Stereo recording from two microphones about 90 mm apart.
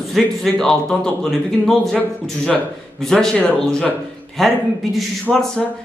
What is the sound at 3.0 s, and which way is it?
A man's voice, 5° left (ahead or behind).